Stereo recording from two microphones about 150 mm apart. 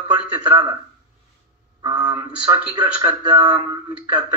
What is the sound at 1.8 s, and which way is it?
A man's voice, 25° right (ahead or behind).